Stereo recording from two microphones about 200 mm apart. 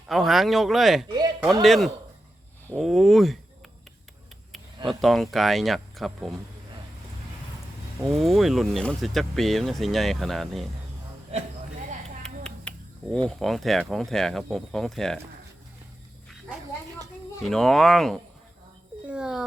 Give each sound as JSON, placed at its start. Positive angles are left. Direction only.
{"t": 0.1, "sound": "speech", "side_deg": 0}
{"t": 4.9, "sound": "speech", "side_deg": 0}
{"t": 8.1, "sound": "speech", "side_deg": 0}
{"t": 11.3, "sound": "speech", "side_deg": -30}
{"t": 12.2, "sound": "finger snapping", "side_deg": 5}
{"t": 13.2, "sound": "speech", "side_deg": 0}
{"t": 17.4, "sound": "speech", "side_deg": 0}
{"t": 19.0, "sound": "a sound", "side_deg": -5}